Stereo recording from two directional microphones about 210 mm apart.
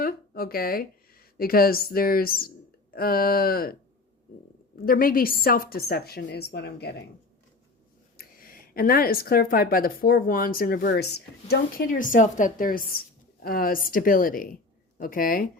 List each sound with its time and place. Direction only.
0.0 s a woman's voice: 45° left (ahead or behind)
4.9 s speech: 45° left (ahead or behind)
8.4 s speech: 45° left (ahead or behind)